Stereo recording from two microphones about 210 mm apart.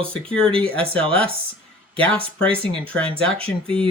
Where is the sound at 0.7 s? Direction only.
25° right (ahead or behind).